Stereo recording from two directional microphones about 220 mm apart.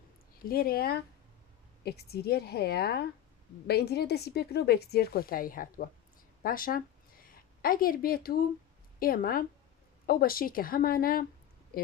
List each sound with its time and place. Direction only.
0.5 s a woman's voice: 40° left (ahead or behind)